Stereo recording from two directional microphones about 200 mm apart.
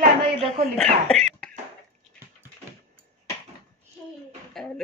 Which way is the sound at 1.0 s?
5° left (ahead or behind).